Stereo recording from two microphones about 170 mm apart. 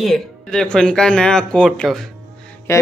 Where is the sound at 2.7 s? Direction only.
15° left (ahead or behind).